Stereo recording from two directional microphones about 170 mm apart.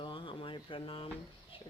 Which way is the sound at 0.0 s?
30° left (ahead or behind).